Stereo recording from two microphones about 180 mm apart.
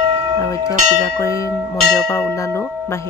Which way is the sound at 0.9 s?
15° left (ahead or behind).